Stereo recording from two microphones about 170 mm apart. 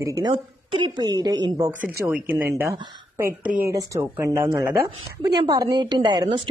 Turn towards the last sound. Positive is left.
turn(degrees=-30)  # may be behind; listen again after turning